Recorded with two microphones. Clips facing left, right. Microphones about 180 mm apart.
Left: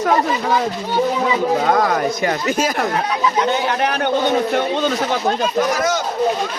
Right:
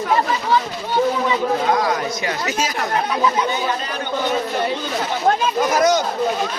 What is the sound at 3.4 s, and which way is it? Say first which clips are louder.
Speech: left 4 dB; 70° left (ahead or behind).